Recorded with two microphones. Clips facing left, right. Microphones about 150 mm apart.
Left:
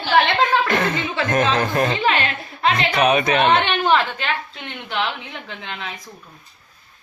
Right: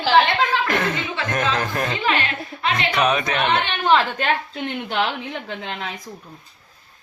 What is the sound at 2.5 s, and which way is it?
Speech, 45° left (ahead or behind).